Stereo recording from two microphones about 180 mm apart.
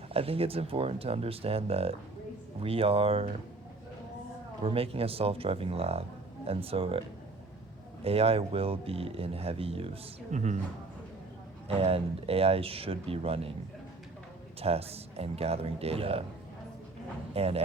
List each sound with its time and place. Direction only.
0.1 s speech: 30° right (ahead or behind)
4.6 s speech: 30° right (ahead or behind)
8.0 s speech: 35° right (ahead or behind)
11.8 s speech: 30° right (ahead or behind)
14.6 s speech: 35° right (ahead or behind)
17.3 s speech: 35° right (ahead or behind)